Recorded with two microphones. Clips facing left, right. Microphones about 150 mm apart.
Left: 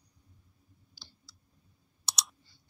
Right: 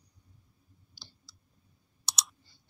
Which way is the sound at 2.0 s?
Centre (ahead or behind).